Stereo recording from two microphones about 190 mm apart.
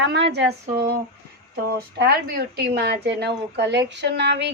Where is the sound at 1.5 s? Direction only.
55° right (ahead or behind).